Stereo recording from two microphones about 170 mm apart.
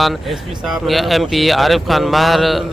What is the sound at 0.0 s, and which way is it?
Speech, centre (ahead or behind).